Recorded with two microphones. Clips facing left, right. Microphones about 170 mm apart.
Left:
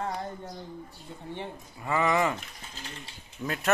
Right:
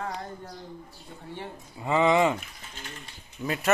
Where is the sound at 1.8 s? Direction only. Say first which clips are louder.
Right 4 dB; 20° right (ahead or behind).